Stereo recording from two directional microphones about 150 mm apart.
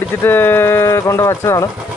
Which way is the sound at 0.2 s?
15° left (ahead or behind).